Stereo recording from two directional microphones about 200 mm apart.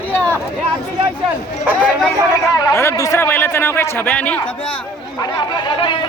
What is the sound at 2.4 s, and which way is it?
A man's voice, 15° left (ahead or behind).